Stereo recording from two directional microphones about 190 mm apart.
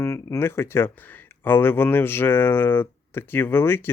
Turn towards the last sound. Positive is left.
turn(degrees=10)  # may be behind; listen again after turning